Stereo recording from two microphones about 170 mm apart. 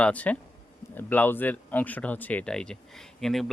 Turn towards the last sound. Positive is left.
turn(degrees=0)  # may be behind; listen again after turning